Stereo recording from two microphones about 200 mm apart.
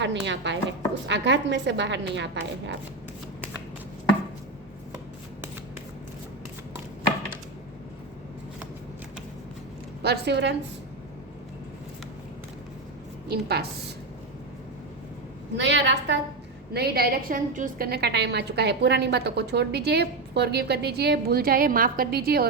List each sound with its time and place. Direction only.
0.0 s a woman's voice: 65° right (ahead or behind)
10.0 s a woman's voice: 55° right (ahead or behind)
13.2 s a woman's voice: 50° right (ahead or behind)
15.5 s a woman's voice: 60° right (ahead or behind)